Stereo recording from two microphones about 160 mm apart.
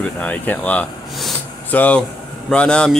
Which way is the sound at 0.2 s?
10° left (ahead or behind).